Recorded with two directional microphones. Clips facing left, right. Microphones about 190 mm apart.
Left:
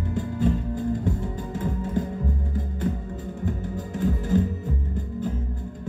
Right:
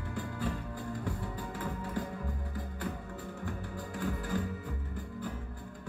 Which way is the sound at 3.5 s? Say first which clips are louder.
Left 12 dB; 20° left (ahead or behind).